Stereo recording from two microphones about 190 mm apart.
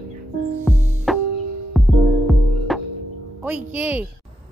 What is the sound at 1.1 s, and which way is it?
Music, centre (ahead or behind).